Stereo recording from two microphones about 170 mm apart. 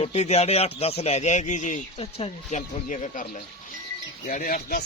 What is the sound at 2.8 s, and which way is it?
Speech, 45° left (ahead or behind).